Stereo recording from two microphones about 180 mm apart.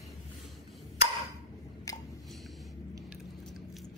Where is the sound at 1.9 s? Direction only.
20° left (ahead or behind).